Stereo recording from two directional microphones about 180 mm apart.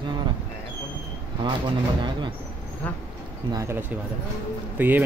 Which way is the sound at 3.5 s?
10° right (ahead or behind).